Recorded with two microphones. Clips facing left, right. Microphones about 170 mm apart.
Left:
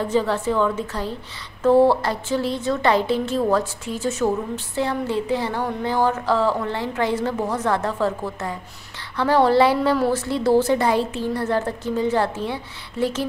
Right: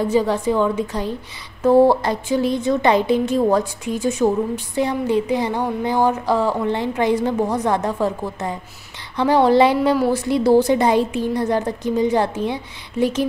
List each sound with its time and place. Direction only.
0.0 s speech: 10° right (ahead or behind)